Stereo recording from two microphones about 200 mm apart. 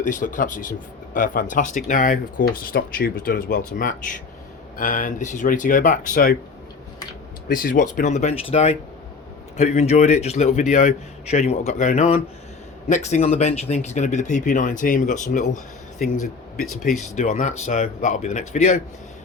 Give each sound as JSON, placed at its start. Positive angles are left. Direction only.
{"t": 0.0, "sound": "speech", "side_deg": 40}
{"t": 7.4, "sound": "speech", "side_deg": 45}